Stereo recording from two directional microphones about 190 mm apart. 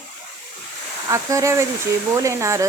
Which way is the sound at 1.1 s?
15° right (ahead or behind).